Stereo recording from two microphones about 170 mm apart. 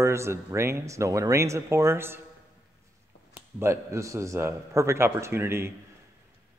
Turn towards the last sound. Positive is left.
turn(degrees=-15)  # may be behind; listen again after turning